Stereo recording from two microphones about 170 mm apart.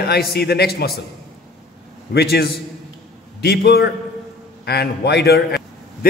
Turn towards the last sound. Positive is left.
turn(degrees=70)  # may be behind; listen again after turning